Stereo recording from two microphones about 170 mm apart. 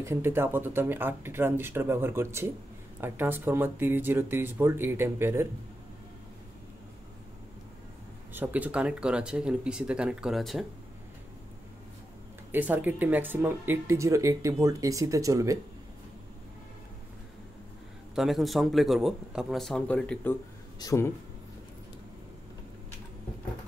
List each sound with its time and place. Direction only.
0.0 s speech: 15° right (ahead or behind)
8.3 s speech: 10° right (ahead or behind)
12.4 s speech: 10° right (ahead or behind)
18.1 s speech: centre (ahead or behind); by 21.1 s 15° left (ahead or behind)